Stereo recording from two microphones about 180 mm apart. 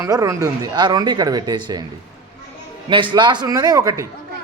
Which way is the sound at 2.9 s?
25° right (ahead or behind).